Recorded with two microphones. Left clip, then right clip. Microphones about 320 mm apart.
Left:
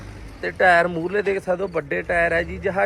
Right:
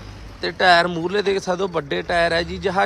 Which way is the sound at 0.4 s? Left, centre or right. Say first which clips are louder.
Right 1 dB; centre.